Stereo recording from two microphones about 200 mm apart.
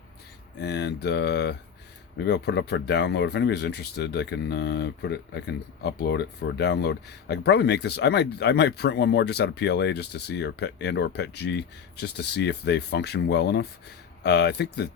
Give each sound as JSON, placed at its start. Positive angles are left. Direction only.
{"t": 0.6, "sound": "speech", "side_deg": 60}